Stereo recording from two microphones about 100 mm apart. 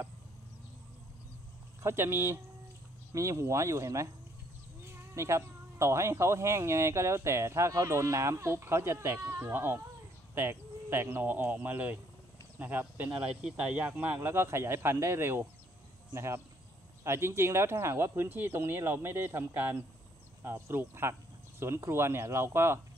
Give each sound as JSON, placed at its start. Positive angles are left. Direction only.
{"t": 1.8, "sound": "speech", "side_deg": -25}
{"t": 5.1, "sound": "speech", "side_deg": -30}